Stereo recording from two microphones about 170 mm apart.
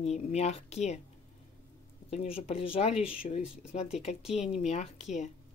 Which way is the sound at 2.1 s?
35° left (ahead or behind).